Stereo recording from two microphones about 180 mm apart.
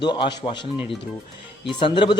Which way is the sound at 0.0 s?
25° left (ahead or behind).